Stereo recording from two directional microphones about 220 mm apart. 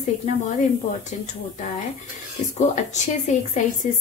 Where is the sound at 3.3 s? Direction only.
35° left (ahead or behind).